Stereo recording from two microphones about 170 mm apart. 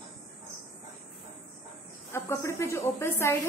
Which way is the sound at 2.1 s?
15° left (ahead or behind).